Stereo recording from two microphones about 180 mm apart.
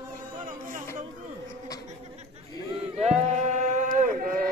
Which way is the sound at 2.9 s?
40° right (ahead or behind).